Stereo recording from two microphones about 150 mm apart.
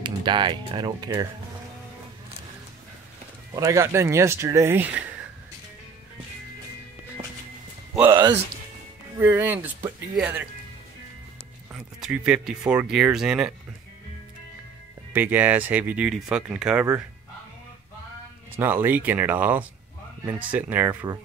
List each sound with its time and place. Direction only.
0.0 s speech: 30° right (ahead or behind)
3.5 s speech: 20° right (ahead or behind)
8.0 s speech: 20° right (ahead or behind)
11.7 s speech: 5° right (ahead or behind)
15.1 s speech: 10° right (ahead or behind)
18.6 s speech: 15° right (ahead or behind)